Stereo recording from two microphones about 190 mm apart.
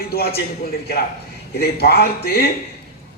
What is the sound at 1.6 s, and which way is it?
Speech, 55° left (ahead or behind).